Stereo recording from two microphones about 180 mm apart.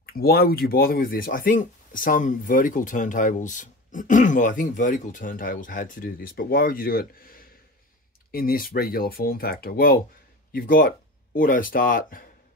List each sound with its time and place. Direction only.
0.0 s speech: 55° left (ahead or behind)